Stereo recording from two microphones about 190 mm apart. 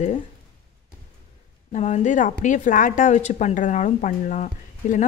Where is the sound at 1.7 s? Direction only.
35° left (ahead or behind).